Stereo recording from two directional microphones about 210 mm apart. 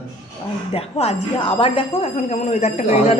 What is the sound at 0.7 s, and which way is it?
Speech, 30° left (ahead or behind).